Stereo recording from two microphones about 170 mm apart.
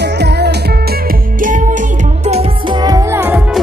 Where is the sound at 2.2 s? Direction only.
35° right (ahead or behind).